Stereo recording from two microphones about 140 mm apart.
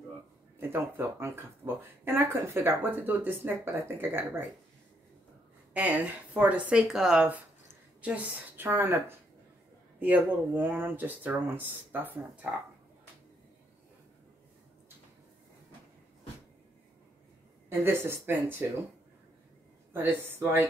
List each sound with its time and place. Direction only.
0.6 s speech: 15° right (ahead or behind)
5.7 s speech: 10° right (ahead or behind)
17.6 s speech: 15° right (ahead or behind)
19.9 s speech: 15° right (ahead or behind)